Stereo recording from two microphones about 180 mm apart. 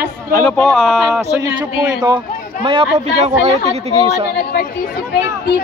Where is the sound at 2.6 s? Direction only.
30° right (ahead or behind).